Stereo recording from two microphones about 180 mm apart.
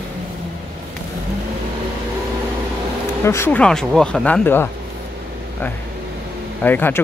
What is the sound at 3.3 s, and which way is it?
Speech, 10° left (ahead or behind).